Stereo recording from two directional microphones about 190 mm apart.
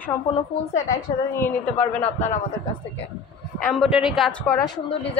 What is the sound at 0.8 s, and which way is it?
A woman's voice, 10° left (ahead or behind).